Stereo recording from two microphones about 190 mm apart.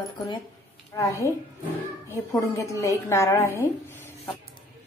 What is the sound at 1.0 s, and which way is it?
A woman's voice, 15° left (ahead or behind).